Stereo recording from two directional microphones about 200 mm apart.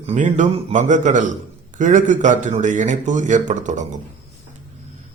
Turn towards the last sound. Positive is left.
turn(degrees=-35)  # may be behind; listen again after turning